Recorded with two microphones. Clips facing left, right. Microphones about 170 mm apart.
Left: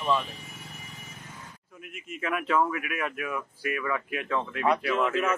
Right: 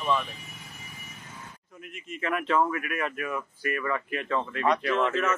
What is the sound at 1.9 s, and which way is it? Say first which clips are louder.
Speech: right 1 dB; 5° left (ahead or behind).